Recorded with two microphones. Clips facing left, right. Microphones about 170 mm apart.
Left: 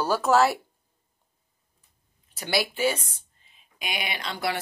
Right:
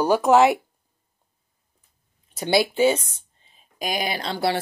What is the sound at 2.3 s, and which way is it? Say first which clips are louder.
Speech: right 7 dB; 25° right (ahead or behind).